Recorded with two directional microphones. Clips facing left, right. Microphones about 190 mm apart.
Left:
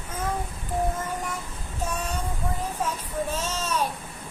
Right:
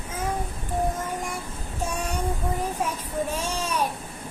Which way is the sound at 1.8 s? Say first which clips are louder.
Right 1 dB; 10° right (ahead or behind).